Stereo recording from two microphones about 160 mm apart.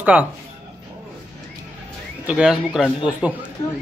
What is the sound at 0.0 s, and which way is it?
Speech, 10° right (ahead or behind).